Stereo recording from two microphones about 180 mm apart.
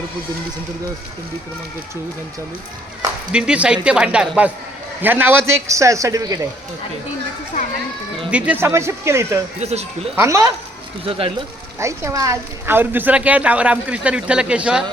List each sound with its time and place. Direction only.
3.3 s a woman's voice: 5° right (ahead or behind)
8.3 s a woman's voice: 5° right (ahead or behind)
9.6 s speech: 35° right (ahead or behind)
10.2 s a woman's voice: 15° right (ahead or behind)
11.0 s speech: 30° right (ahead or behind)
11.8 s a woman's voice: 15° right (ahead or behind)